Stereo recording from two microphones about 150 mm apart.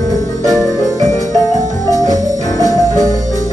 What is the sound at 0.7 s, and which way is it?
Music, 20° left (ahead or behind).